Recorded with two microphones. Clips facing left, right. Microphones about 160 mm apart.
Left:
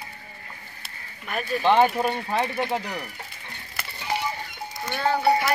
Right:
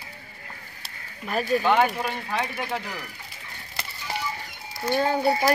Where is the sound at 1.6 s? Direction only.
30° left (ahead or behind).